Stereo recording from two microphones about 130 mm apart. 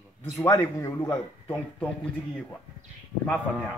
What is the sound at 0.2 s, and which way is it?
A man's voice, 25° left (ahead or behind).